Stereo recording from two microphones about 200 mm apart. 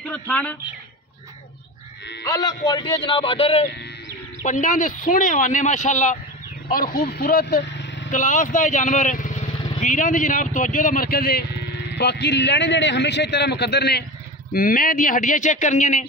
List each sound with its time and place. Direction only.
0.0 s speech: 5° left (ahead or behind)
2.2 s a man's voice: 20° left (ahead or behind)
4.4 s speech: 40° left (ahead or behind); by 8.1 s 60° left (ahead or behind)
8.1 s a man's voice: 40° left (ahead or behind)